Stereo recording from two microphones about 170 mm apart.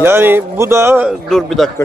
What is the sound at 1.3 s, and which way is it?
Speech, centre (ahead or behind).